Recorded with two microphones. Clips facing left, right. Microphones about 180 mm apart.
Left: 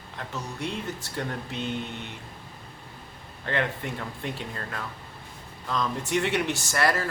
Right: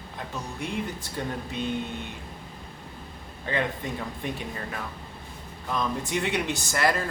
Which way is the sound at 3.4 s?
15° right (ahead or behind).